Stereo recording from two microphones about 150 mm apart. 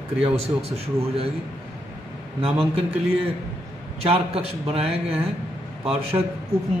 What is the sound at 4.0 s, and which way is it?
A man's voice, 40° right (ahead or behind).